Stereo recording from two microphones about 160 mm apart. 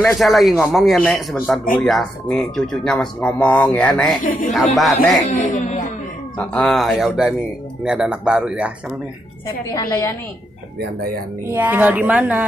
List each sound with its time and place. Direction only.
0.0 s speech: centre (ahead or behind)
5.3 s speech: 45° left (ahead or behind)
6.3 s speech: 5° left (ahead or behind)
9.8 s a woman's voice: 20° left (ahead or behind)
11.4 s speech: 10° right (ahead or behind)